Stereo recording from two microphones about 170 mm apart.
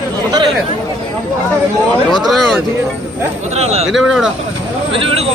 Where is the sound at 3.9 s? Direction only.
5° right (ahead or behind).